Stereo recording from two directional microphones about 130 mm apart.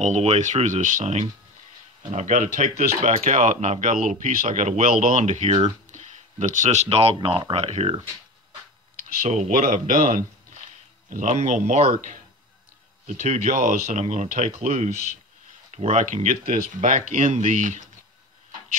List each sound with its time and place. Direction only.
0.0 s speech: 60° right (ahead or behind)
2.8 s speech: 55° right (ahead or behind)
7.2 s speech: 40° right (ahead or behind)
9.3 s speech: 65° right (ahead or behind); by 10.6 s 85° right
11.1 s speech: 70° right (ahead or behind)